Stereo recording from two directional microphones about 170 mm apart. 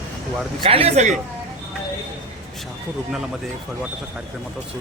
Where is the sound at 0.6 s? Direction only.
35° right (ahead or behind).